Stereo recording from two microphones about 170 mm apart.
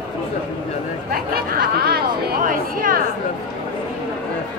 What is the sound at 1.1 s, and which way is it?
Chatter, 60° right (ahead or behind).